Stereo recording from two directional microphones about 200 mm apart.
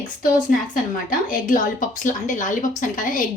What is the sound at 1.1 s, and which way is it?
A woman's voice, 40° left (ahead or behind).